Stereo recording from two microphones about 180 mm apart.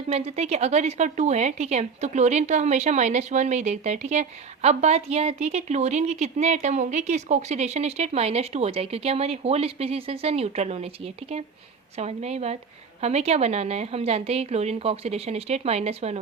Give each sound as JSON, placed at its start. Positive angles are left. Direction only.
{"t": 0.1, "sound": "a woman's voice", "side_deg": -35}